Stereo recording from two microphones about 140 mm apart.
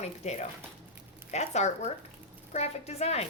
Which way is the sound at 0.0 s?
50° left (ahead or behind).